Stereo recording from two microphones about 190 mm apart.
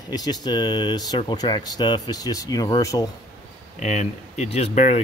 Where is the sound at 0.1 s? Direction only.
20° left (ahead or behind).